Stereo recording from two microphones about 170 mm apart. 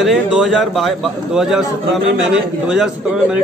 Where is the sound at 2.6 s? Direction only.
5° right (ahead or behind).